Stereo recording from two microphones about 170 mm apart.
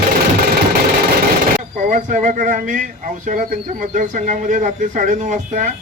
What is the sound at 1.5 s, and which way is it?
A man's voice, 50° right (ahead or behind).